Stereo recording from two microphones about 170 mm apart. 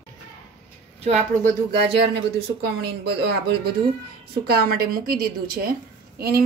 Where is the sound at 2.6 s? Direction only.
75° right (ahead or behind).